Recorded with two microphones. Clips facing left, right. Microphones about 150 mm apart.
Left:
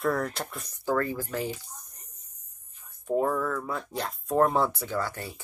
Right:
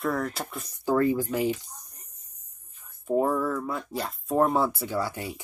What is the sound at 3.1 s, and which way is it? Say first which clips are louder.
Speech: right 2 dB; 10° right (ahead or behind).